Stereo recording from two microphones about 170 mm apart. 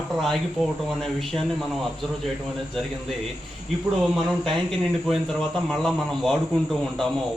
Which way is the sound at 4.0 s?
Centre (ahead or behind).